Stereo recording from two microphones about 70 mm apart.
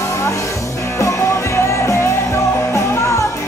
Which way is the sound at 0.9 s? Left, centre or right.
Left.